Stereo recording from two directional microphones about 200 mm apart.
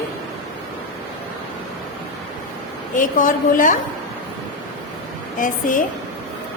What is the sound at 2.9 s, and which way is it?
Speech, 40° left (ahead or behind).